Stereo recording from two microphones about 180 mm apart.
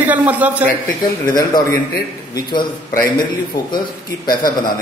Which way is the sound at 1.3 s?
20° left (ahead or behind).